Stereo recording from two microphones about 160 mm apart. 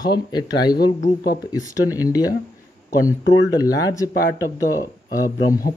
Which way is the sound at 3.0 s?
75° left (ahead or behind).